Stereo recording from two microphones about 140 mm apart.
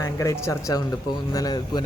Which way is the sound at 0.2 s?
20° left (ahead or behind).